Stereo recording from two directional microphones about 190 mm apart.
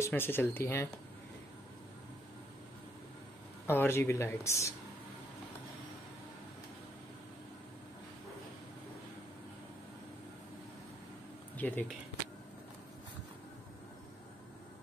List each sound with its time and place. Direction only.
0.0 s speech: 10° left (ahead or behind)
3.6 s speech: 10° left (ahead or behind)
11.5 s a sound: 10° left (ahead or behind)